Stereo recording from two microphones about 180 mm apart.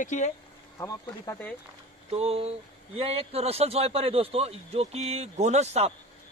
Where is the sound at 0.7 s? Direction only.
20° left (ahead or behind).